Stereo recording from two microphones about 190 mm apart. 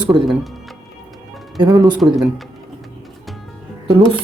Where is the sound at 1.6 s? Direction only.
20° right (ahead or behind).